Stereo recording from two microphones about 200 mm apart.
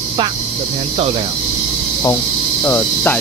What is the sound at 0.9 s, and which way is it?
Speech, 30° right (ahead or behind).